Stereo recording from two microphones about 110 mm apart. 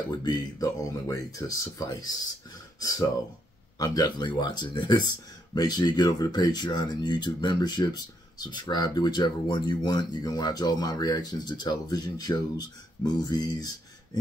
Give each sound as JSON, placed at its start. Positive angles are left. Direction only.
{"t": 0.1, "sound": "speech", "side_deg": 40}
{"t": 3.7, "sound": "speech", "side_deg": 35}